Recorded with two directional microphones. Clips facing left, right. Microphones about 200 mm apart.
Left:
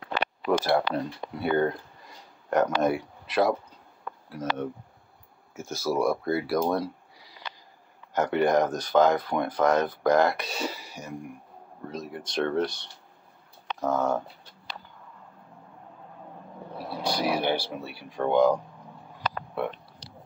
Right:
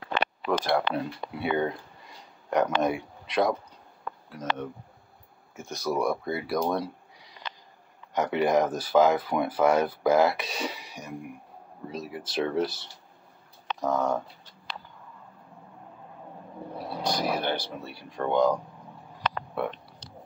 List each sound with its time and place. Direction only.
0.5 s speech: 10° left (ahead or behind)
0.9 s speech: 5° right (ahead or behind)
4.4 s speech: 25° left (ahead or behind)
5.6 s speech: 5° left (ahead or behind)
8.1 s speech: centre (ahead or behind)
17.0 s speech: 10° left (ahead or behind)